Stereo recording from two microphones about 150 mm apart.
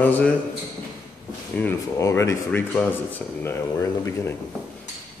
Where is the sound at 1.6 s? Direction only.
20° left (ahead or behind).